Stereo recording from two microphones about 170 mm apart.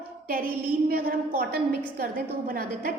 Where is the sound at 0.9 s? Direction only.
60° right (ahead or behind).